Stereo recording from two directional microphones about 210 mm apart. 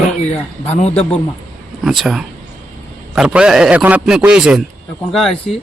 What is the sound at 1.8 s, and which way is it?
A man's voice, centre (ahead or behind).